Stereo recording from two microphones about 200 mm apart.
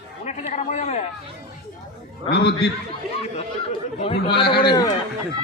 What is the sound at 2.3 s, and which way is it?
Speech, 55° left (ahead or behind).